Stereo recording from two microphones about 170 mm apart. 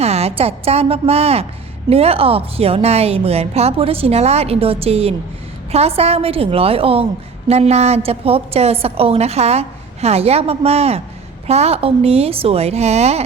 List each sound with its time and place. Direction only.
0.0 s a woman's voice: 40° right (ahead or behind)